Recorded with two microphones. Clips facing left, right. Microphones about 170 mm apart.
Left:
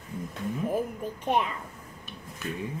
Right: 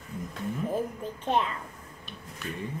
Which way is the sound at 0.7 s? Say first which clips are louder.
Left 2 dB; 10° left (ahead or behind).